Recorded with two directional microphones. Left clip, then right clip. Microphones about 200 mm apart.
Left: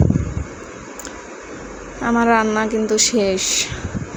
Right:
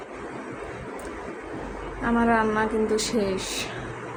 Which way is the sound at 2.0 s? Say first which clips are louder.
Left 6 dB; 35° left (ahead or behind).